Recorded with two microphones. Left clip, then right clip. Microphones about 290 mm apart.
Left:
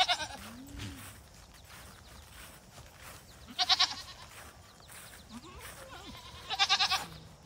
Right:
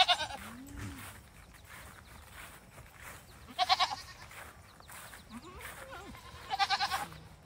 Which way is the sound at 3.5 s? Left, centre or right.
Centre.